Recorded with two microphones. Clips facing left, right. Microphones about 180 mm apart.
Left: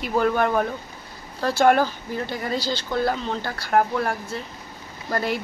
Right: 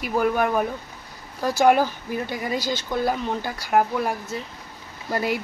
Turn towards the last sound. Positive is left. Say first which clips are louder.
# even
turn(degrees=-10)  # may be behind; listen again after turning